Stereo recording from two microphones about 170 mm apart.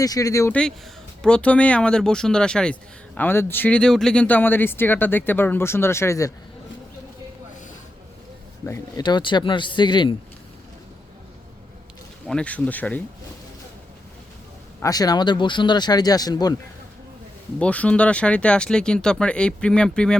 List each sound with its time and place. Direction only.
0.0 s speech: 20° left (ahead or behind)
1.2 s speech: 5° left (ahead or behind)
8.6 s speech: 20° left (ahead or behind)
12.3 s speech: 5° left (ahead or behind)
14.8 s speech: 20° left (ahead or behind)
17.6 s speech: 5° left (ahead or behind)